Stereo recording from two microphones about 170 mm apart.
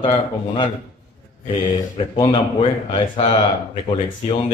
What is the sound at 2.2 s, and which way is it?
Speech, 30° left (ahead or behind).